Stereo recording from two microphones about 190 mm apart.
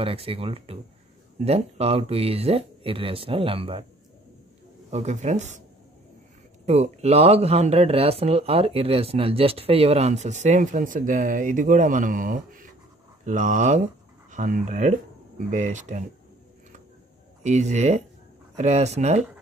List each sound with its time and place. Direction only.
0.0 s speech: 30° right (ahead or behind)
4.9 s speech: 35° right (ahead or behind)
6.6 s speech: 35° right (ahead or behind)
17.4 s speech: 35° right (ahead or behind)